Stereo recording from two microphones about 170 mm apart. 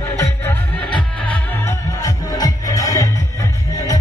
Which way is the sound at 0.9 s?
10° left (ahead or behind).